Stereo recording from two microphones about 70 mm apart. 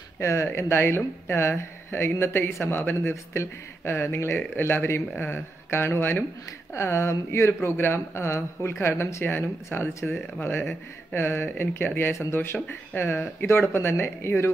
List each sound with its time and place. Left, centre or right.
0.2 s speech: left
6.7 s speech: left
11.1 s speech: left